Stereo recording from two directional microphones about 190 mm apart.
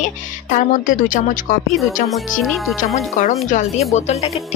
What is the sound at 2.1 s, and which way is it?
Speech, centre (ahead or behind).